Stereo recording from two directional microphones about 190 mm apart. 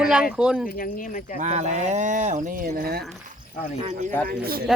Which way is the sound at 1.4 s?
35° right (ahead or behind).